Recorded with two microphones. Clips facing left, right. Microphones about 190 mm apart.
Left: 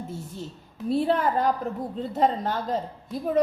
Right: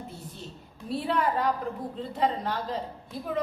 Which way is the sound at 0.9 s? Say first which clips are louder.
Left 4 dB; 45° left (ahead or behind).